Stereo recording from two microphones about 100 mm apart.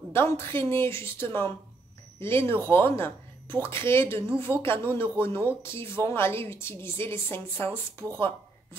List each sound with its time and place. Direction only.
0.1 s a woman's voice: 25° left (ahead or behind)